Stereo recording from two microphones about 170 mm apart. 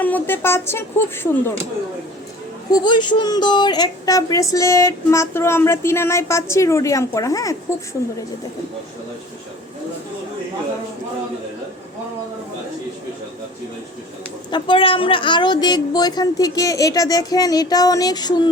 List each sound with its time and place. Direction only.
0.0 s speech: 10° left (ahead or behind)
2.6 s speech: 25° left (ahead or behind)
14.5 s speech: 30° left (ahead or behind)